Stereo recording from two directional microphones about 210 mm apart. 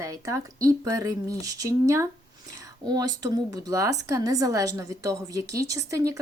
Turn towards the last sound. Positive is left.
turn(degrees=-15)  # may be behind; listen again after turning